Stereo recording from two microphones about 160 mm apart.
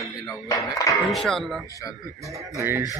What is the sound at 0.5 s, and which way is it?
Speech, 20° left (ahead or behind).